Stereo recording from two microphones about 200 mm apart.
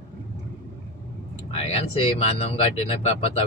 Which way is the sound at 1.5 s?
30° left (ahead or behind).